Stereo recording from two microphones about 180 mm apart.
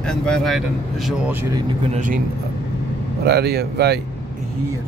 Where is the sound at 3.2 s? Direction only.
65° right (ahead or behind).